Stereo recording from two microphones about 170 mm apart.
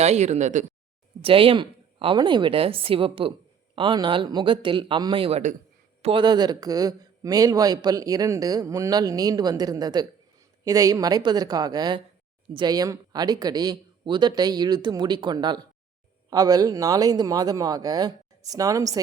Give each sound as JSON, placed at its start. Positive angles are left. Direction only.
{"t": 0.0, "sound": "speech", "side_deg": -40}
{"t": 1.2, "sound": "a woman's voice", "side_deg": -30}